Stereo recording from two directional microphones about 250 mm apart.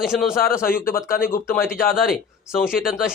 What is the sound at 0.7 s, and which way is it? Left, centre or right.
Speech, left.